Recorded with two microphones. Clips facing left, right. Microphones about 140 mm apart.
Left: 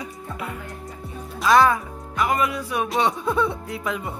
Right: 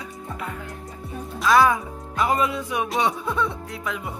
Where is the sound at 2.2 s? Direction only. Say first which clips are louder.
Even; 25° right (ahead or behind).